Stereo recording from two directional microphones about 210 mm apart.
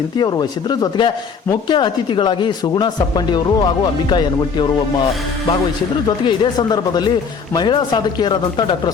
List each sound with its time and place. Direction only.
0.2 s speech: 20° left (ahead or behind)
6.1 s speech: 20° left (ahead or behind)